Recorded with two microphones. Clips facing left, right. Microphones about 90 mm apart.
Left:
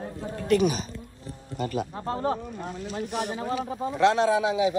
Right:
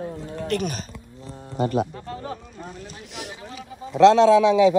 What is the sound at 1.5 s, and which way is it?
Speech, 45° right (ahead or behind).